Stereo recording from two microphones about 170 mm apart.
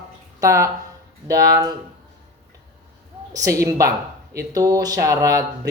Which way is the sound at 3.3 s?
20° right (ahead or behind).